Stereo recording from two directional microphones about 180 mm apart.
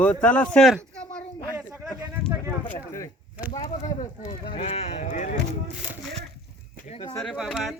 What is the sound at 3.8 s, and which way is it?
Speech, 35° left (ahead or behind).